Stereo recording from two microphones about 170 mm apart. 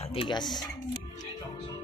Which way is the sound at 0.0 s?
35° left (ahead or behind).